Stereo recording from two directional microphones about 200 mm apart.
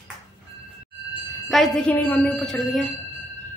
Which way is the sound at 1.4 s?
Centre (ahead or behind).